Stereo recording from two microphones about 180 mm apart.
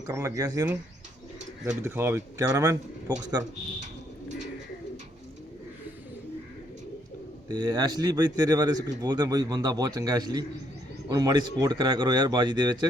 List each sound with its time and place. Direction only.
0.0 s speech: 15° right (ahead or behind)
1.8 s speech: 10° right (ahead or behind)
7.4 s speech: 20° right (ahead or behind)